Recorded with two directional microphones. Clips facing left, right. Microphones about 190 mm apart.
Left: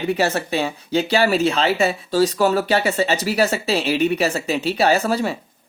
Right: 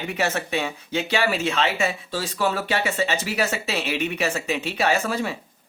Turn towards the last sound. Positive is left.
turn(degrees=35)  # may be behind; listen again after turning